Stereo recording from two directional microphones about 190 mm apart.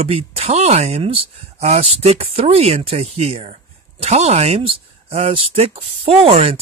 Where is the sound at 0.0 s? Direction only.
35° right (ahead or behind).